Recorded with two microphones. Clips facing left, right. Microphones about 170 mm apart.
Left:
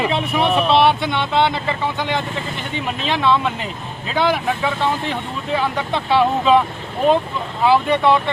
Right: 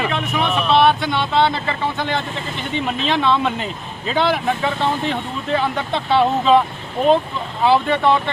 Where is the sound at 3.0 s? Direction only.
5° left (ahead or behind).